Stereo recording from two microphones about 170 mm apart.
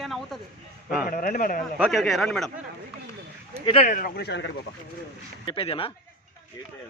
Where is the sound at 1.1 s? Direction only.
55° left (ahead or behind).